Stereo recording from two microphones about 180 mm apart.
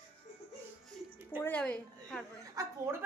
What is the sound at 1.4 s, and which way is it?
Speech, 10° left (ahead or behind).